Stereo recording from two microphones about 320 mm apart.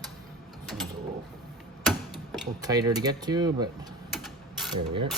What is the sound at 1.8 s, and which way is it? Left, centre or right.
Tick-tock, centre.